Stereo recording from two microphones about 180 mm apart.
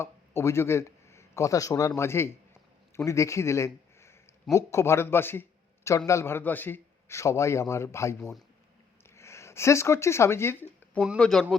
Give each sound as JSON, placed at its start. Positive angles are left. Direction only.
{"t": 0.0, "sound": "a man's voice", "side_deg": 15}
{"t": 8.2, "sound": "speech", "side_deg": 0}
{"t": 9.0, "sound": "a sound", "side_deg": 15}
{"t": 11.2, "sound": "speech", "side_deg": 5}